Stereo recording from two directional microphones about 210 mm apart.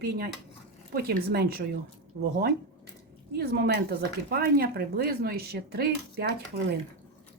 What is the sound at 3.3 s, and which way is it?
Speech, 50° right (ahead or behind).